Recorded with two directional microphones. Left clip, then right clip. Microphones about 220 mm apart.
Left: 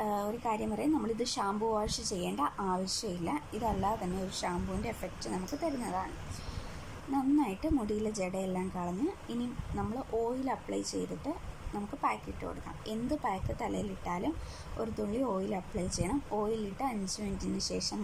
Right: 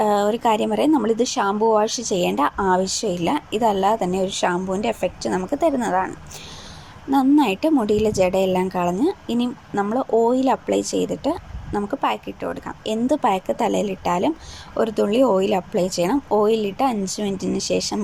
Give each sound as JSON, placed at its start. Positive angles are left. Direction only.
{"t": 0.0, "sound": "speech", "side_deg": -30}
{"t": 7.1, "sound": "speech", "side_deg": -30}